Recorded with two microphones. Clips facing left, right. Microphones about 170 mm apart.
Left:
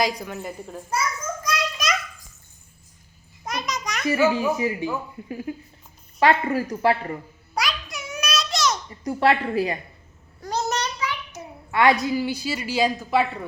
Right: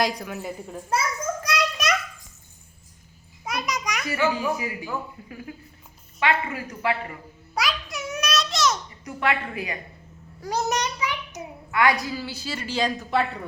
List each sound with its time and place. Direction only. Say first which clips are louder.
0.0 s a woman's voice: left 1 dB; centre (ahead or behind)
1.4 s a sound: right 1 dB; 70° right (ahead or behind)
3.4 s a sound: even; 10° right (ahead or behind)
4.4 s a man's voice: left 4 dB; 25° left (ahead or behind)
6.1 s speech: left 6 dB; 40° left (ahead or behind)
7.5 s a sound: even; centre (ahead or behind)
9.0 s speech: left 6 dB; 35° left (ahead or behind)
10.4 s a child's voice: even; 15° right (ahead or behind)
11.7 s a woman's voice: left 4 dB; 25° left (ahead or behind); by 13.2 s 5° left (ahead or behind)